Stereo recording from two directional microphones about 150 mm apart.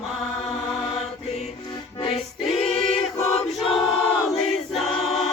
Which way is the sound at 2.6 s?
45° left (ahead or behind).